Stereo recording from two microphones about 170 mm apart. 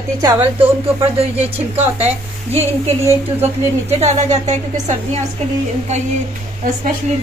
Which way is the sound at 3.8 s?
40° right (ahead or behind).